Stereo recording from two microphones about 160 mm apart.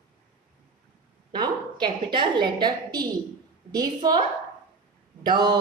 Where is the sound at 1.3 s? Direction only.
30° right (ahead or behind).